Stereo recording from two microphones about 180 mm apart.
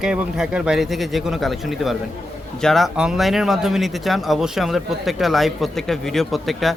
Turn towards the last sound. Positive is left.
turn(degrees=0)  # may be behind; listen again after turning